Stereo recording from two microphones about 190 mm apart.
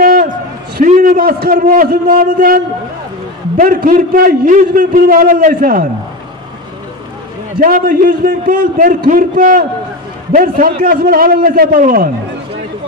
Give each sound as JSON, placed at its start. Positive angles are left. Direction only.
{"t": 0.0, "sound": "a sound", "side_deg": -50}
{"t": 0.7, "sound": "a man's voice", "side_deg": -45}
{"t": 7.6, "sound": "a man's voice", "side_deg": -45}